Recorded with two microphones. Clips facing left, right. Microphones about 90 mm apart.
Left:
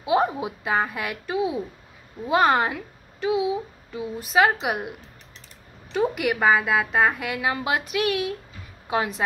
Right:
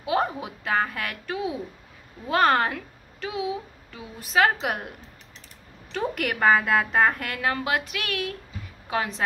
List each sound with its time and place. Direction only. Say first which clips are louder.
0.0 s a woman's voice: left 3 dB; 20° left (ahead or behind)